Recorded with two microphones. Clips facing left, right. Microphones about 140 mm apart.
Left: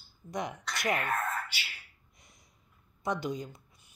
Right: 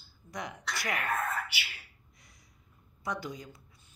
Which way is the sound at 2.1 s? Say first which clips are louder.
Left 2 dB; 20° left (ahead or behind).